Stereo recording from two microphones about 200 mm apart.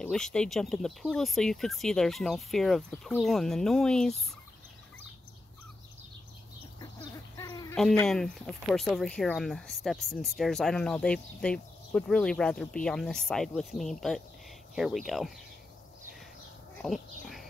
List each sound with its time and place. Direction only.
0.0 s speech: 5° left (ahead or behind)
6.8 s bird: 20° left (ahead or behind)
8.1 s speech: centre (ahead or behind)
16.7 s bird: centre (ahead or behind)